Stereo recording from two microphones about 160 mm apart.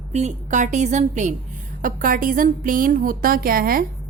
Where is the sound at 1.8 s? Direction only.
60° right (ahead or behind).